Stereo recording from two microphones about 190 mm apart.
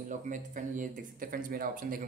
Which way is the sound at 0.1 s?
40° right (ahead or behind).